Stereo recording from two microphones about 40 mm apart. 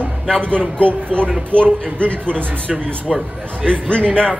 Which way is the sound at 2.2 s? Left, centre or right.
Right.